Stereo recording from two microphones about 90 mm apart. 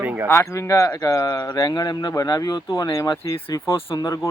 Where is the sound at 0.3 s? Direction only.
30° left (ahead or behind).